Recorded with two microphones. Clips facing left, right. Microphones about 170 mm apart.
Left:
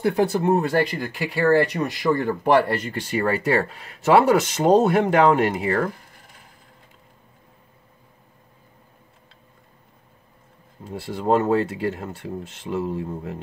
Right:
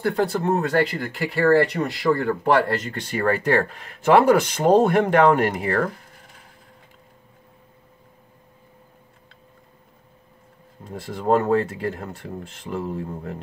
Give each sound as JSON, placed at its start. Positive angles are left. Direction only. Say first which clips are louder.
{"t": 0.0, "sound": "speech", "louder": "left 2 dB", "side_deg": 10}
{"t": 3.1, "sound": "speech", "louder": "right 1 dB", "side_deg": 5}
{"t": 10.8, "sound": "speech", "louder": "left 2 dB", "side_deg": 5}